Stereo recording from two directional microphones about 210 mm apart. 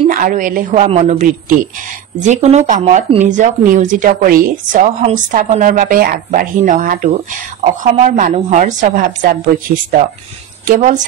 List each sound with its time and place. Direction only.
0.1 s speech: 40° right (ahead or behind)
10.7 s speech: 35° right (ahead or behind)